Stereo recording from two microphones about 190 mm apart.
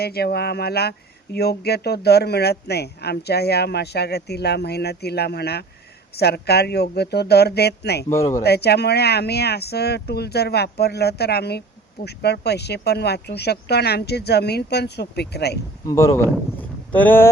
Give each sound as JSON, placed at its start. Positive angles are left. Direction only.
{"t": 0.0, "sound": "speech", "side_deg": 55}
{"t": 8.1, "sound": "speech", "side_deg": 15}
{"t": 8.4, "sound": "speech", "side_deg": 60}
{"t": 15.9, "sound": "speech", "side_deg": 15}
{"t": 16.6, "sound": "boat", "side_deg": 10}